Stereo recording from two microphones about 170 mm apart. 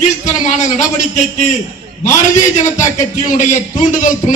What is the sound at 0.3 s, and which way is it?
Speech, 45° left (ahead or behind).